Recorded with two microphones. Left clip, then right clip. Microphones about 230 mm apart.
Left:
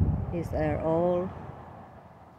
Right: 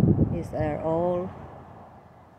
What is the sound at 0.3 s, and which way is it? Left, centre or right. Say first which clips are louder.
Speech: right 1 dB; centre.